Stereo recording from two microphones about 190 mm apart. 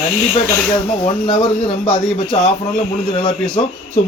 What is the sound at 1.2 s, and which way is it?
Speech, 30° left (ahead or behind).